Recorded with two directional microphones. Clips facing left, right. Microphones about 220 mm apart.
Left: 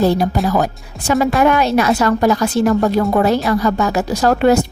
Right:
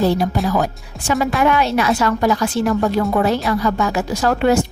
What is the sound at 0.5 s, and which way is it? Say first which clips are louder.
A woman's voice: left 2 dB; 40° left (ahead or behind).